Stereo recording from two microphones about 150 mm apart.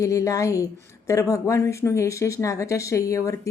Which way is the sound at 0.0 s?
20° left (ahead or behind).